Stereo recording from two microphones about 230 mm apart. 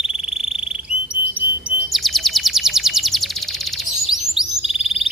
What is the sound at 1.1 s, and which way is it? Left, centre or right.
Bird, centre.